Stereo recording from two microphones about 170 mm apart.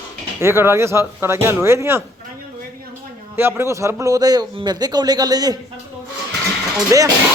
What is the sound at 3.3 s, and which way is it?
A man's voice, 15° right (ahead or behind).